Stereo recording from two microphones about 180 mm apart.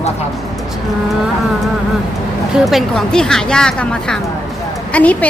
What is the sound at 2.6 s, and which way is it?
A woman's voice, centre (ahead or behind).